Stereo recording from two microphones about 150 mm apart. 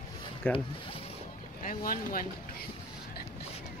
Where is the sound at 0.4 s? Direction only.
10° left (ahead or behind).